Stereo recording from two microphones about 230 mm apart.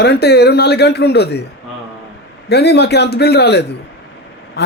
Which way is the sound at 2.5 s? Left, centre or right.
Left.